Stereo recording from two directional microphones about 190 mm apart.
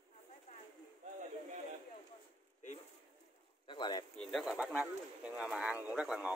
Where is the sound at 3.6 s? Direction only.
25° left (ahead or behind).